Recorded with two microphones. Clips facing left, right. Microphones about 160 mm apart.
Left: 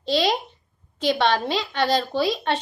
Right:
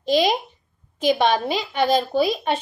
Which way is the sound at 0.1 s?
15° right (ahead or behind).